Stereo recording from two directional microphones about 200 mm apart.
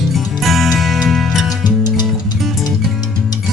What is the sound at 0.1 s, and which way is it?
Music, centre (ahead or behind).